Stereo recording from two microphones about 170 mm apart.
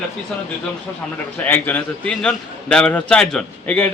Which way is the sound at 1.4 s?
10° left (ahead or behind).